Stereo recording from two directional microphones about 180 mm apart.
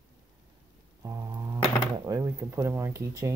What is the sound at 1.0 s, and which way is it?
Speech, 20° right (ahead or behind).